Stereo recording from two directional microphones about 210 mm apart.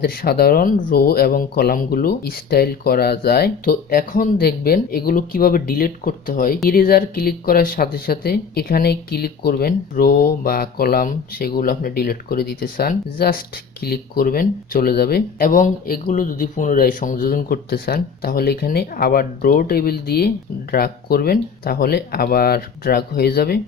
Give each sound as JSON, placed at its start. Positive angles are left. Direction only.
{"t": 0.0, "sound": "speech", "side_deg": 45}